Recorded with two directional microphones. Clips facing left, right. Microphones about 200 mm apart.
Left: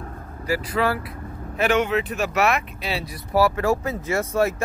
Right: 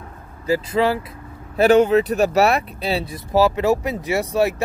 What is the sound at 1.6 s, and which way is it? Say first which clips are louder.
Speech: right 7 dB; 35° right (ahead or behind).